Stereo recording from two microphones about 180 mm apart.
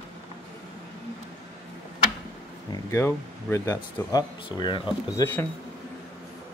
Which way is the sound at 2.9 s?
15° left (ahead or behind).